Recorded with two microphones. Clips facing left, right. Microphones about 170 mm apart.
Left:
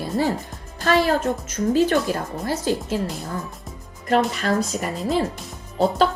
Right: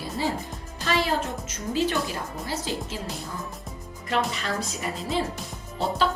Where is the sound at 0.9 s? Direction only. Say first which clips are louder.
Left 7 dB; 50° left (ahead or behind).